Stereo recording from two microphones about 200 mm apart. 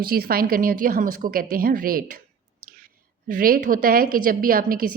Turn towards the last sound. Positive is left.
turn(degrees=-45)  # may be behind; listen again after turning